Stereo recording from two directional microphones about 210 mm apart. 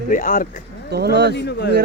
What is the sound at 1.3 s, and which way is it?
Speech, 55° left (ahead or behind).